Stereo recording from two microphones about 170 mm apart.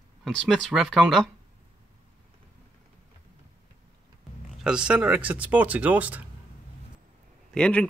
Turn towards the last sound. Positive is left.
turn(degrees=5)  # may be behind; listen again after turning